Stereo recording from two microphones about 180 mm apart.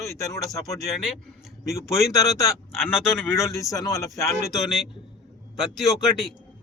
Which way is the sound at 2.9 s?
5° right (ahead or behind).